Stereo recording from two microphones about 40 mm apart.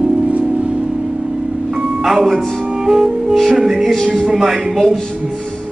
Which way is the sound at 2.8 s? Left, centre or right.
Centre.